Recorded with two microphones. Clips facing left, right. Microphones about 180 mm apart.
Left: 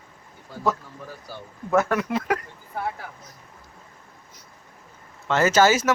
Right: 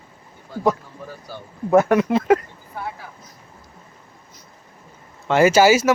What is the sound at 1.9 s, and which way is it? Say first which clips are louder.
Speech: right 8 dB; 25° right (ahead or behind).